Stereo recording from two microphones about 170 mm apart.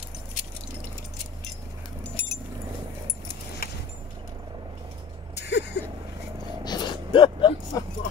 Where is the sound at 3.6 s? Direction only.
65° left (ahead or behind).